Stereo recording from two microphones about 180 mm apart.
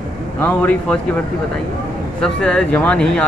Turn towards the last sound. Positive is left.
turn(degrees=5)  # may be behind; listen again after turning